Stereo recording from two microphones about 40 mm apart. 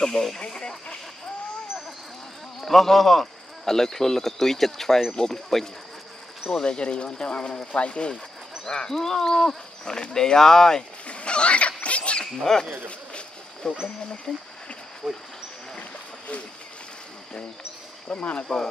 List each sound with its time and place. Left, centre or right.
0.0 s speech: centre
0.4 s speech: centre
2.6 s speech: centre
6.5 s speech: left
8.9 s speech: centre
11.1 s a sound: left
12.4 s speech: centre
13.6 s speech: centre
15.0 s speech: right
18.0 s speech: left